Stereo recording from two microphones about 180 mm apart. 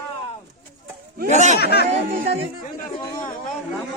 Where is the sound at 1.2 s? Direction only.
40° right (ahead or behind).